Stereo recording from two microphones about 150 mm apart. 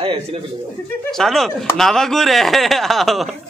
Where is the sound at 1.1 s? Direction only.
Centre (ahead or behind).